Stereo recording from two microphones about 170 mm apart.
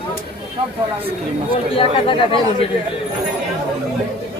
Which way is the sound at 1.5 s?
30° left (ahead or behind).